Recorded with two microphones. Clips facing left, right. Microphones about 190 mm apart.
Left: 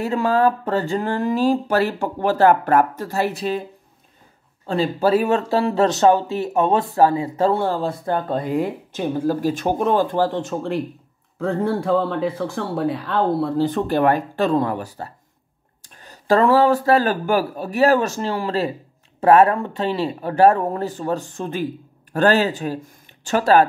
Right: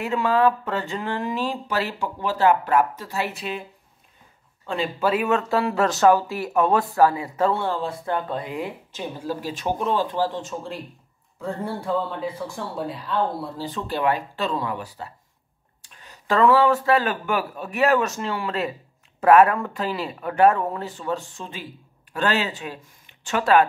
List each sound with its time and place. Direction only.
0.0 s speech: 40° left (ahead or behind)
4.6 s speech: 35° left (ahead or behind); by 10.8 s 65° left (ahead or behind)
11.3 s speech: 90° left; by 23.6 s 35° left (ahead or behind)